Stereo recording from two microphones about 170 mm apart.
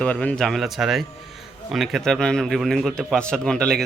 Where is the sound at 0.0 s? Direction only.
5° left (ahead or behind).